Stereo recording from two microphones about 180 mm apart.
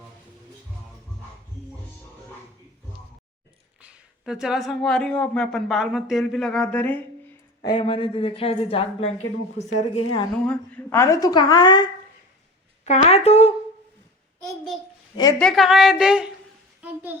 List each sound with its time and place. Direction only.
3.8 s speech: 5° right (ahead or behind)
7.6 s a woman's voice: 25° left (ahead or behind)
10.4 s a woman's voice: 5° left (ahead or behind); by 11.9 s 25° left (ahead or behind)
13.1 s a woman's voice: 35° left (ahead or behind)
15.1 s a woman's voice: 20° left (ahead or behind)
15.4 s a child's voice: centre (ahead or behind)